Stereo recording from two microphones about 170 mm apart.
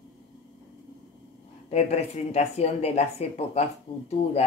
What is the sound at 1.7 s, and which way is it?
Speech, 40° left (ahead or behind).